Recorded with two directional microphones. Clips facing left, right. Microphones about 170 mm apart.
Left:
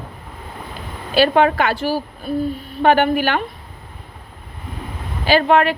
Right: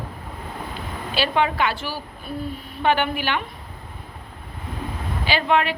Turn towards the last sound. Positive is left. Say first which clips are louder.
# left 6 dB
turn(degrees=45)  # may be behind; listen again after turning